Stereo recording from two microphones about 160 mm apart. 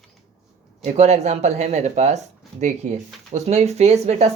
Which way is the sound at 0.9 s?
45° right (ahead or behind).